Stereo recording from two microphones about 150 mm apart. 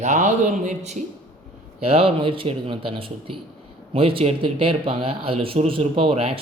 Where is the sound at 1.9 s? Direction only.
40° right (ahead or behind).